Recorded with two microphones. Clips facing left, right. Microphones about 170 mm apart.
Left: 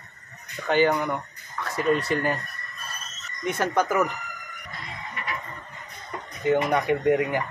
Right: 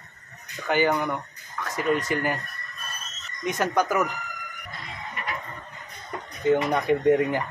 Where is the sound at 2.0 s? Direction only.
10° right (ahead or behind).